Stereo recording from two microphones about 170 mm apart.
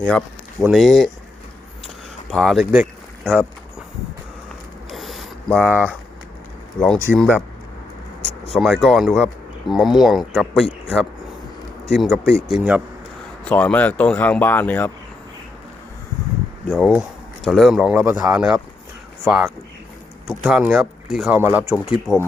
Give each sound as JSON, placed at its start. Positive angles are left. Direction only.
{"t": 0.0, "sound": "speech", "side_deg": 5}
{"t": 2.3, "sound": "speech", "side_deg": 0}
{"t": 4.9, "sound": "a sound", "side_deg": 0}
{"t": 6.7, "sound": "speech", "side_deg": 5}
{"t": 8.2, "sound": "a sound", "side_deg": 40}
{"t": 8.5, "sound": "speech", "side_deg": 0}
{"t": 13.5, "sound": "speech", "side_deg": 10}
{"t": 16.6, "sound": "speech", "side_deg": 0}
{"t": 17.9, "sound": "a man's voice", "side_deg": -15}